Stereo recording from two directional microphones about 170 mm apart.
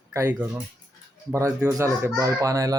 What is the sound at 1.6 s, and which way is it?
A child's voice, 20° right (ahead or behind).